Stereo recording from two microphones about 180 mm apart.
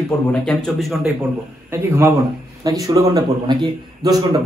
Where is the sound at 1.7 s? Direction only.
15° right (ahead or behind).